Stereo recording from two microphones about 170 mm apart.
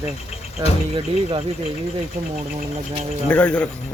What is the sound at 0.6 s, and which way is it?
Speech, 30° right (ahead or behind).